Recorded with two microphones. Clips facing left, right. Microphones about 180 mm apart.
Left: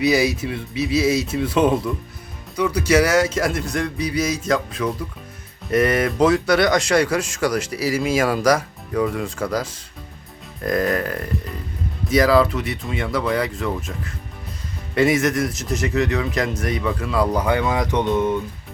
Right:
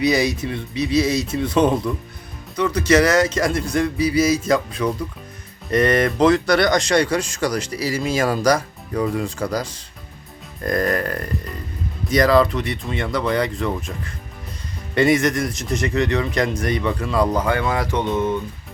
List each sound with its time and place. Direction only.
0.0 s speech: 5° left (ahead or behind)
17.4 s speech: 15° left (ahead or behind)